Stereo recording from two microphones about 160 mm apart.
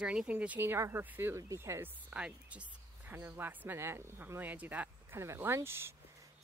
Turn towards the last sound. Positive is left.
turn(degrees=-15)  # may be behind; listen again after turning